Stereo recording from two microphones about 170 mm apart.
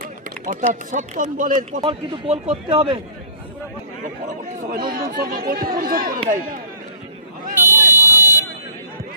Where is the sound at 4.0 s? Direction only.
50° right (ahead or behind).